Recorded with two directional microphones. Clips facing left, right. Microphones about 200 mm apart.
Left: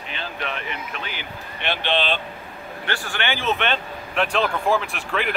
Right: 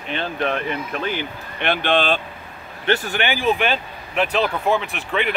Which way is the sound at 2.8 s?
20° right (ahead or behind).